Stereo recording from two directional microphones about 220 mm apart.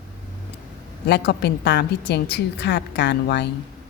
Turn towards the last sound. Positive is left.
turn(degrees=50)  # may be behind; listen again after turning